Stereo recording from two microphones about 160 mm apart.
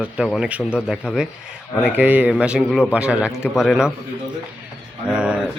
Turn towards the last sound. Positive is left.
turn(degrees=-5)  # may be behind; listen again after turning